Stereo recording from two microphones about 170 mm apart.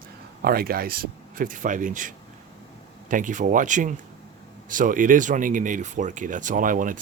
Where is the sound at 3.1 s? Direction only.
50° right (ahead or behind).